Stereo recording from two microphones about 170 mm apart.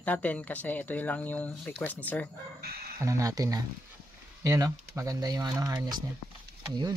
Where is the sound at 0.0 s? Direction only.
10° left (ahead or behind).